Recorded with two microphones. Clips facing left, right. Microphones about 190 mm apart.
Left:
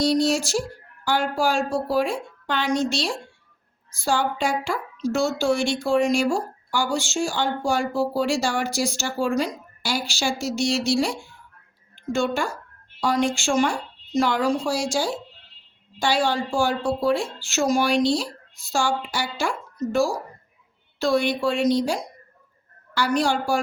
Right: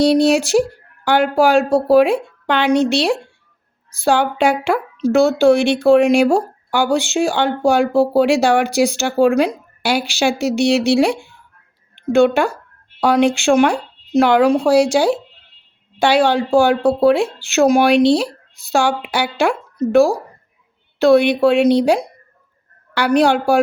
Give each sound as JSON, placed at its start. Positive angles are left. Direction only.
{"t": 0.0, "sound": "speech", "side_deg": -65}